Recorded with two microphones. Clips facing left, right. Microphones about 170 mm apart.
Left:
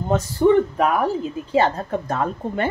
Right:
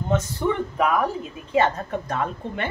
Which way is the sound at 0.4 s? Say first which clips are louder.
Left 9 dB; 30° left (ahead or behind).